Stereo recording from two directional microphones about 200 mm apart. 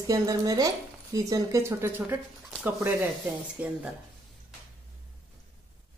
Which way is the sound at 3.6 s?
5° right (ahead or behind).